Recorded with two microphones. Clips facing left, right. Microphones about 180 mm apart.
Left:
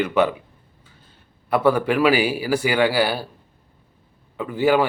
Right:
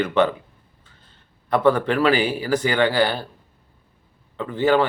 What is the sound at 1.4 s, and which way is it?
Speech, 10° left (ahead or behind).